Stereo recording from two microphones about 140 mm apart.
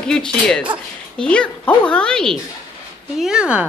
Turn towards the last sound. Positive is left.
turn(degrees=-5)  # may be behind; listen again after turning